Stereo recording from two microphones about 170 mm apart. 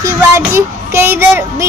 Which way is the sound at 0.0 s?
15° right (ahead or behind).